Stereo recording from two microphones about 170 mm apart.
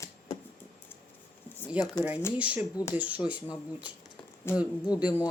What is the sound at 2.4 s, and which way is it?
Speech, 5° right (ahead or behind).